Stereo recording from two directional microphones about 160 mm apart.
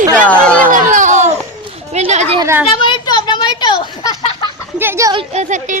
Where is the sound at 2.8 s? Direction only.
30° left (ahead or behind).